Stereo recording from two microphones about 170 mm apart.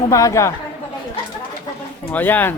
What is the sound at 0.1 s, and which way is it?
Speech, 20° left (ahead or behind).